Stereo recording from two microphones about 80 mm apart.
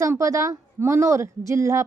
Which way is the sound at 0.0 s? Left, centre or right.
Right.